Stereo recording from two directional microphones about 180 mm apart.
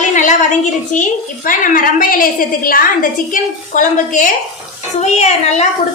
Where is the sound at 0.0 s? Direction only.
45° left (ahead or behind).